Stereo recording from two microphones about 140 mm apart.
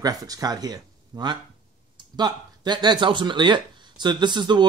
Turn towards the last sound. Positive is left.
turn(degrees=-30)  # may be behind; listen again after turning